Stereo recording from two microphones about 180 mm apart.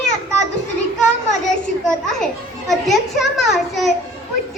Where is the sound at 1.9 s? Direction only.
5° left (ahead or behind).